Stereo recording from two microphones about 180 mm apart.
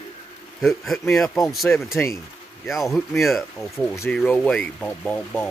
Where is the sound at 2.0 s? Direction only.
10° left (ahead or behind).